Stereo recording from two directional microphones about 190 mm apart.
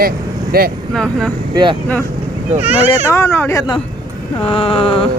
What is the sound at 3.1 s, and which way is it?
Speech, 15° left (ahead or behind).